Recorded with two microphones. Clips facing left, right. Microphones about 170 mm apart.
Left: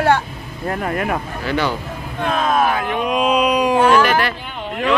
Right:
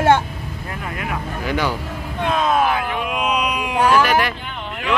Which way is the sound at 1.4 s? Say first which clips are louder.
Left 1 dB; 10° right (ahead or behind).